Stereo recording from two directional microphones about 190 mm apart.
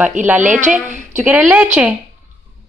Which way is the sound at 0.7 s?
5° right (ahead or behind).